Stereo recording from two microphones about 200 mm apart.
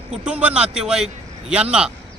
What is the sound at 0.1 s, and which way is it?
Speech, 5° right (ahead or behind).